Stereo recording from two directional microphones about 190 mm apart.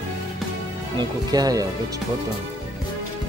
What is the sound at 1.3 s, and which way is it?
Speech, 20° right (ahead or behind).